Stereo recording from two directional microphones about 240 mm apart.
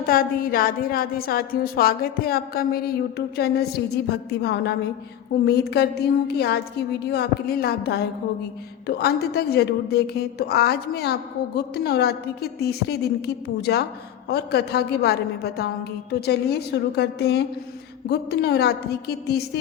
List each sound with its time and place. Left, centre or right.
0.1 s a woman's voice: left